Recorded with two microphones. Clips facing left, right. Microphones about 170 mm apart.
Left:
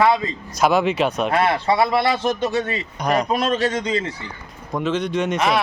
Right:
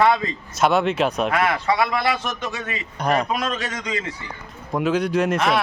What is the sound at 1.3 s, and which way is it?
Speech, 30° left (ahead or behind).